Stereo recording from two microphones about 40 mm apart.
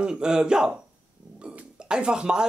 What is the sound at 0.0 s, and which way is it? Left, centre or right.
Speech, centre.